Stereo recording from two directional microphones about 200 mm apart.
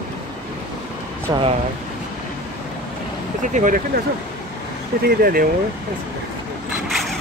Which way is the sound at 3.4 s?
40° right (ahead or behind).